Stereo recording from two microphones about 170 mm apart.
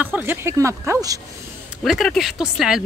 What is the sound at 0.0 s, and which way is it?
Speech, 10° right (ahead or behind).